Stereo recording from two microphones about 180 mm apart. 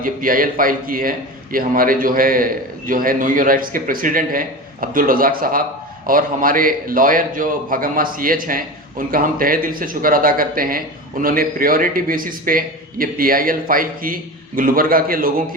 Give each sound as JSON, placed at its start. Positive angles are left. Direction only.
{"t": 0.0, "sound": "a man's voice", "side_deg": -50}